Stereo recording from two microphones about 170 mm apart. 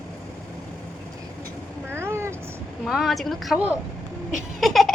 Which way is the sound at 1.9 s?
15° right (ahead or behind).